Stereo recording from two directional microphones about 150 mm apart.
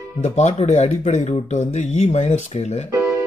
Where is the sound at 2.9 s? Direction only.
20° right (ahead or behind).